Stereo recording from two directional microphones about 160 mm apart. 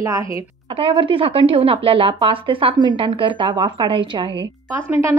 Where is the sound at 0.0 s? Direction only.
20° right (ahead or behind).